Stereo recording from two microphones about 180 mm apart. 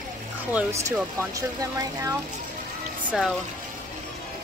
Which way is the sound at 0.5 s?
10° right (ahead or behind).